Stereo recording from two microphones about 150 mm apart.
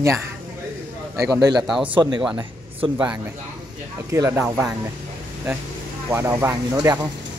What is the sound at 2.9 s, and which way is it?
Speech, 10° right (ahead or behind).